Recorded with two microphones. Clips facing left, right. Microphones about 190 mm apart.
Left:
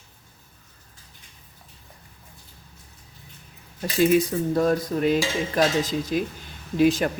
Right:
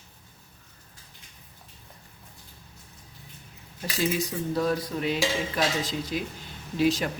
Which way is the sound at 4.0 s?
55° left (ahead or behind).